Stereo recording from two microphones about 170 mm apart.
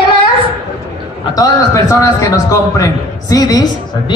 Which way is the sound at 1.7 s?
15° left (ahead or behind).